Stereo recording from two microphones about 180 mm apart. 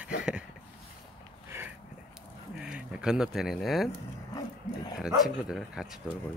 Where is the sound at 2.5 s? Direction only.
5° right (ahead or behind).